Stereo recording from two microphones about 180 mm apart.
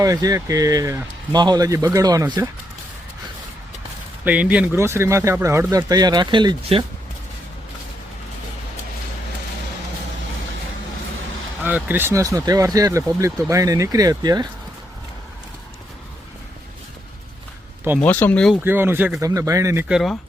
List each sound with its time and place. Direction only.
0.0 s speech: 20° right (ahead or behind)
4.2 s speech: 10° right (ahead or behind); by 6.8 s 30° right (ahead or behind)
11.6 s speech: 10° right (ahead or behind)
18.0 s speech: 10° left (ahead or behind)
18.6 s speech: 10° right (ahead or behind)
19.9 s speech: centre (ahead or behind)